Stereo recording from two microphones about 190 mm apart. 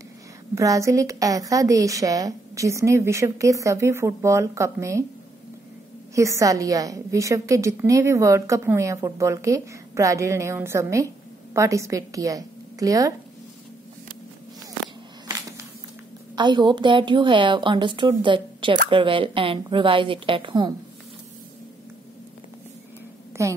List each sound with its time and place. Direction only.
0.6 s a woman's voice: 15° right (ahead or behind)
6.1 s a woman's voice: 15° right (ahead or behind)
16.3 s a woman's voice: 25° right (ahead or behind)
23.4 s a woman's voice: 15° right (ahead or behind)